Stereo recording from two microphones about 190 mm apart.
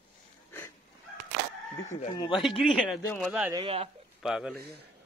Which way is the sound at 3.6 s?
30° right (ahead or behind).